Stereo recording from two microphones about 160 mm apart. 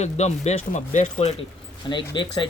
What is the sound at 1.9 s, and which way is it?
Speech, 30° left (ahead or behind).